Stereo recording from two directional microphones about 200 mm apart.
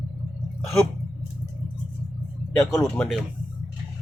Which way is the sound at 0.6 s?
Centre (ahead or behind).